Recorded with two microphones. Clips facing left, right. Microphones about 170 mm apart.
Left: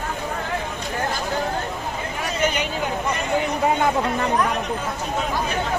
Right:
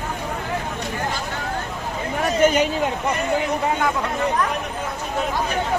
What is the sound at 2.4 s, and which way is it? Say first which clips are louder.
Speech: right 7 dB; 45° right (ahead or behind).